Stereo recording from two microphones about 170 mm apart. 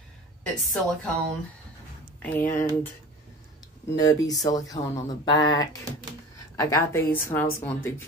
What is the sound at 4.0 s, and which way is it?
Speech, 20° left (ahead or behind).